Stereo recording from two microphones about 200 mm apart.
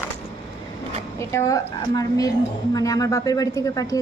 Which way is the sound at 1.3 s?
15° left (ahead or behind).